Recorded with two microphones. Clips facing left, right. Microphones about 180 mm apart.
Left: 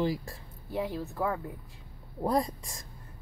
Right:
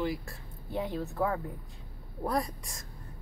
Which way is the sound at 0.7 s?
5° left (ahead or behind).